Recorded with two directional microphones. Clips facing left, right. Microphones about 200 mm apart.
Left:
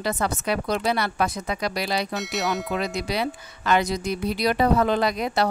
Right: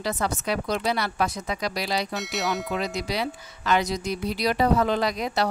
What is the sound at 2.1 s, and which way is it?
Speech, centre (ahead or behind).